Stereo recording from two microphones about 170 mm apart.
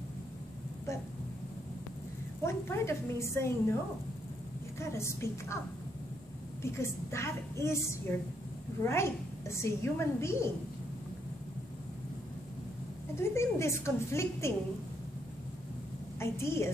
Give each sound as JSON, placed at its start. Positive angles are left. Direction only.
{"t": 2.4, "sound": "a woman's voice", "side_deg": 15}
{"t": 4.7, "sound": "a woman's voice", "side_deg": 15}
{"t": 6.6, "sound": "a woman's voice", "side_deg": 15}
{"t": 13.1, "sound": "a woman's voice", "side_deg": 15}
{"t": 16.2, "sound": "a woman's voice", "side_deg": 15}